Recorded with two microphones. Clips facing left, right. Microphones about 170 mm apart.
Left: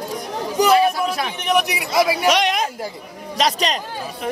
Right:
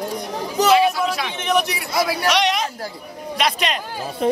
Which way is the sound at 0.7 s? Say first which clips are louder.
Even; 45° left (ahead or behind).